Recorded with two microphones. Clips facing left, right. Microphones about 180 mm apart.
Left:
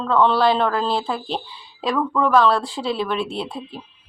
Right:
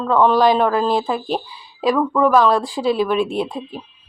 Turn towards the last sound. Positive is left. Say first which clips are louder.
# right 5 dB
turn(degrees=-15)  # may be behind; listen again after turning